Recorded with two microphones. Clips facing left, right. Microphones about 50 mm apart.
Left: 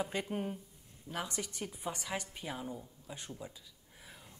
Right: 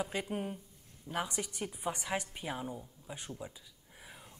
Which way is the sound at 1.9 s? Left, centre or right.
Right.